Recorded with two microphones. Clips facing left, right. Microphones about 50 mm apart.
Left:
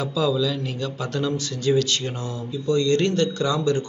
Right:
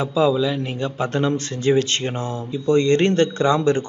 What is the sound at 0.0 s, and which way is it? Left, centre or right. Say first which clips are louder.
A man's voice: right 4 dB; right.